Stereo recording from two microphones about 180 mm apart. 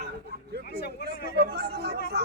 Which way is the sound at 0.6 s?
65° left (ahead or behind).